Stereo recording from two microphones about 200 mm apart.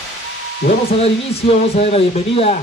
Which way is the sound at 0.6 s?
50° left (ahead or behind).